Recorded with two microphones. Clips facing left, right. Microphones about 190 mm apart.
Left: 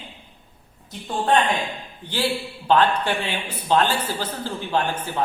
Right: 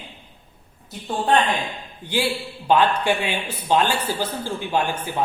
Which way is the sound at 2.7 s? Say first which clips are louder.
Right 1 dB; 10° right (ahead or behind).